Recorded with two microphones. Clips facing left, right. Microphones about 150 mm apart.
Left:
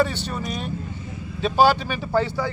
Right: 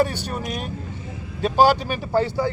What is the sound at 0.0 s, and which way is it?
A man's voice, 50° right (ahead or behind).